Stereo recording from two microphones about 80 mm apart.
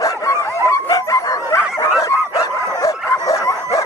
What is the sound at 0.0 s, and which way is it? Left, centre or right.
Dog, left.